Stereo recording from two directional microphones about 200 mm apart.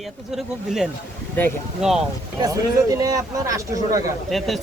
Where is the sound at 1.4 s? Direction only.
10° left (ahead or behind).